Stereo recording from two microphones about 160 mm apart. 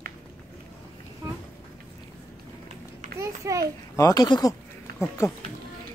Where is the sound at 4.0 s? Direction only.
20° left (ahead or behind).